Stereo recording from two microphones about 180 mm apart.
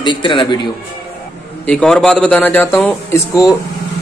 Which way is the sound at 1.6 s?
5° left (ahead or behind).